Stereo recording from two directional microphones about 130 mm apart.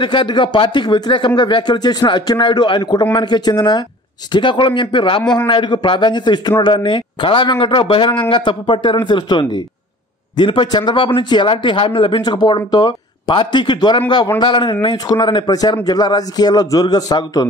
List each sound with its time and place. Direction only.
0.0 s speech: 40° left (ahead or behind)